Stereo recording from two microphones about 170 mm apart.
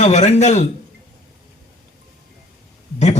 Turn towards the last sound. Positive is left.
turn(degrees=40)  # may be behind; listen again after turning